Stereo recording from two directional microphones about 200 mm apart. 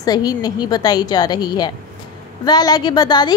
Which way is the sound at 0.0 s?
20° left (ahead or behind).